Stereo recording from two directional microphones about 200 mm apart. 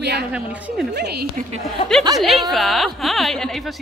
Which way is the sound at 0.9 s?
55° right (ahead or behind).